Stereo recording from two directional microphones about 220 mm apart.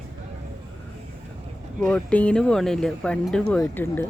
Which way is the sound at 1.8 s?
5° left (ahead or behind).